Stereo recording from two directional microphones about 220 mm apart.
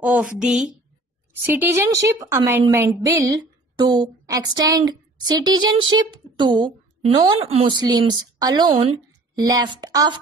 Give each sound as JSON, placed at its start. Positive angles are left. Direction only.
{"t": 0.0, "sound": "a woman's voice", "side_deg": -5}